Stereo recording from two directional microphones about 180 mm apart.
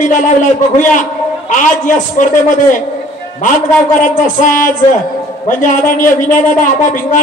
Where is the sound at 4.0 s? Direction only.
45° left (ahead or behind).